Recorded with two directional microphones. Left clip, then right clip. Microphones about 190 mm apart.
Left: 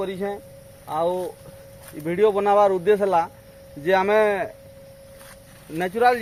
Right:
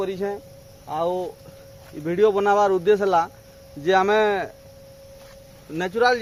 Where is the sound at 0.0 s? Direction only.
10° right (ahead or behind).